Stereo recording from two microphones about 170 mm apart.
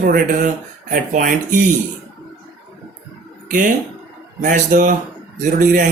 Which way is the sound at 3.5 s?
50° right (ahead or behind).